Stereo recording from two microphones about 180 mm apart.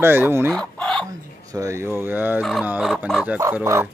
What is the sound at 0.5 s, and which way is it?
Chicken, 5° left (ahead or behind).